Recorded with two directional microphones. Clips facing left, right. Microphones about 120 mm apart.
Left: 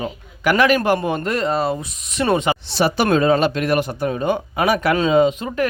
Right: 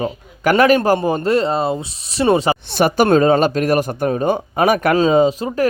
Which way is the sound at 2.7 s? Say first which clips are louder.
Right 4 dB; 50° right (ahead or behind).